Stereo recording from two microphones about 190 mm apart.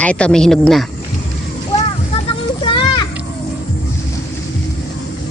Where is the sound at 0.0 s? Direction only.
5° left (ahead or behind).